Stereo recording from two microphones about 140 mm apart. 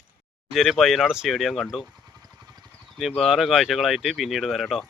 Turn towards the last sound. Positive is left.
turn(degrees=0)  # may be behind; listen again after turning